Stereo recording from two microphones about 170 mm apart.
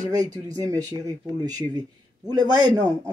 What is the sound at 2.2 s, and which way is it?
Speech, 25° right (ahead or behind).